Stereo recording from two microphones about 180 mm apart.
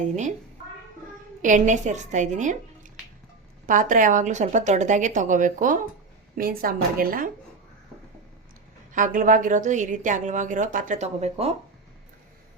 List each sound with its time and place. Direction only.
0.0 s a woman's voice: 40° right (ahead or behind)
1.4 s a woman's voice: 45° right (ahead or behind)
3.7 s a woman's voice: 45° right (ahead or behind)
8.9 s a woman's voice: 45° right (ahead or behind)